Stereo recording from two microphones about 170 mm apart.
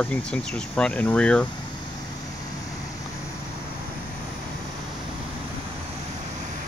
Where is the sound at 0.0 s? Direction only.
5° left (ahead or behind).